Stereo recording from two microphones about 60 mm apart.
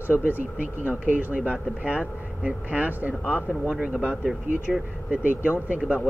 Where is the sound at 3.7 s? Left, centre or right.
Centre.